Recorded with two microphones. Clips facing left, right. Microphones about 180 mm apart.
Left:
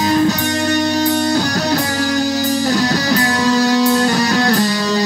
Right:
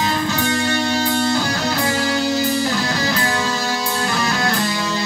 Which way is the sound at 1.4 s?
40° left (ahead or behind).